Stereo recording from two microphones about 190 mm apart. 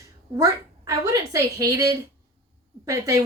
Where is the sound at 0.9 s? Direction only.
15° right (ahead or behind).